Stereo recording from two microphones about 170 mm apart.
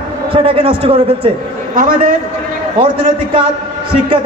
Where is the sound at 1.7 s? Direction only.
55° right (ahead or behind).